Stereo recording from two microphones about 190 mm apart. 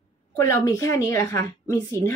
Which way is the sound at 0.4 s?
15° left (ahead or behind).